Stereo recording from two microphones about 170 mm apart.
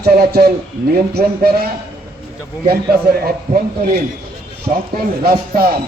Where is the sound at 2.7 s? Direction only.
65° right (ahead or behind).